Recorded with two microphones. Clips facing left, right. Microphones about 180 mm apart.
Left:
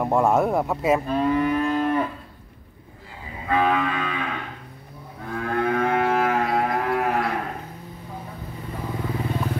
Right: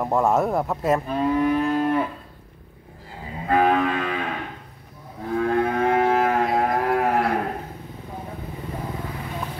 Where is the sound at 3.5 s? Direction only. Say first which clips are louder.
Right 2 dB; 45° right (ahead or behind).